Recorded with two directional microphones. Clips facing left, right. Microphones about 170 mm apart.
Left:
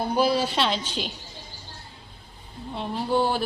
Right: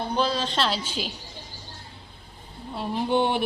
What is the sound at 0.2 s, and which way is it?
Speech, 10° left (ahead or behind).